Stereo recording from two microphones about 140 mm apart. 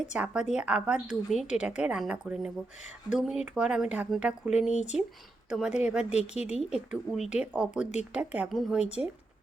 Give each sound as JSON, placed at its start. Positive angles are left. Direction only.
{"t": 0.1, "sound": "a woman's voice", "side_deg": -5}
{"t": 4.7, "sound": "speech", "side_deg": 55}
{"t": 5.5, "sound": "speech", "side_deg": -5}
{"t": 6.1, "sound": "a woman's voice", "side_deg": 50}
{"t": 6.5, "sound": "a woman's voice", "side_deg": -5}